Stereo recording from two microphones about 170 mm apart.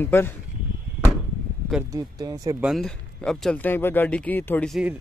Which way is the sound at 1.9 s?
20° right (ahead or behind).